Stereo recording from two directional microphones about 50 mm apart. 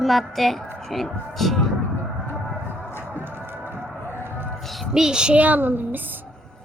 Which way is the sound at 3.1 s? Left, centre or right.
Right.